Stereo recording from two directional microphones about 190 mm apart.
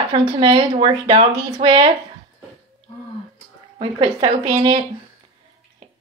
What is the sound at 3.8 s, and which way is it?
Speech, 30° right (ahead or behind).